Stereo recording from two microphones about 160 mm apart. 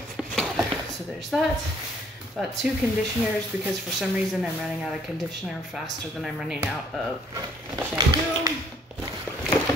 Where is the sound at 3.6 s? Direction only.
5° right (ahead or behind).